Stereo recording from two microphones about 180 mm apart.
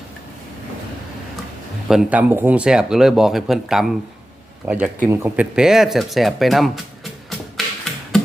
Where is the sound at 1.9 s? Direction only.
5° right (ahead or behind).